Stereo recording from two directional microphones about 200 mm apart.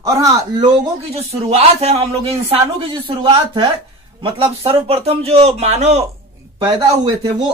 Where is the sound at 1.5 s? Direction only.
30° right (ahead or behind).